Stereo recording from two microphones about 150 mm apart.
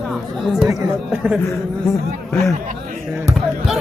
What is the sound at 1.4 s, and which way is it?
Speech, 20° left (ahead or behind).